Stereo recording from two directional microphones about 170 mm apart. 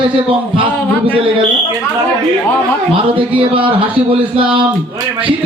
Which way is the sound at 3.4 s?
30° right (ahead or behind).